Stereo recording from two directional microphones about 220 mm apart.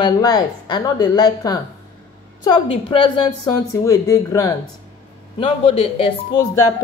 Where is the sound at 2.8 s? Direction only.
20° left (ahead or behind).